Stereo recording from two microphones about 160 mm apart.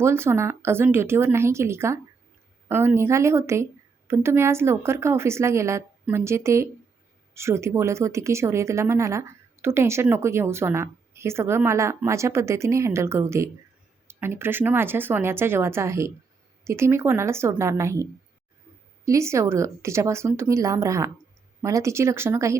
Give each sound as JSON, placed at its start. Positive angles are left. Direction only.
{"t": 0.0, "sound": "speech", "side_deg": -15}